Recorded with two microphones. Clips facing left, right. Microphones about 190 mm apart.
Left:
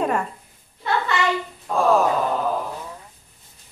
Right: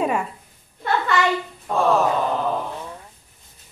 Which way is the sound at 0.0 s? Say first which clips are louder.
Even; 5° right (ahead or behind).